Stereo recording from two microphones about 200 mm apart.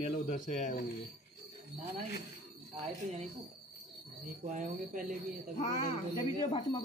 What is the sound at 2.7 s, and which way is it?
Speech, 35° right (ahead or behind).